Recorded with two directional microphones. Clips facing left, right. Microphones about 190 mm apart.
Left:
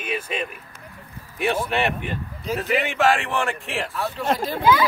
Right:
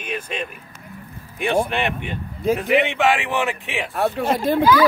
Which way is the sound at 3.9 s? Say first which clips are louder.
Right 7 dB; 55° right (ahead or behind).